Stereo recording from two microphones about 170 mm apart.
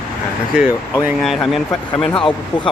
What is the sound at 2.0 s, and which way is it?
Speech, 30° left (ahead or behind).